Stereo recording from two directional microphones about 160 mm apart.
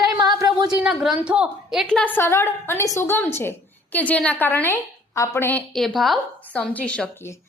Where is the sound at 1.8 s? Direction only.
5° left (ahead or behind).